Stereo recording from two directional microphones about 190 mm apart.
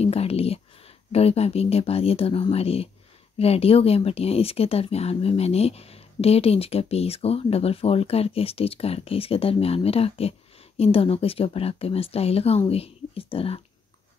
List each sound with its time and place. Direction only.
0.0 s speech: 30° left (ahead or behind)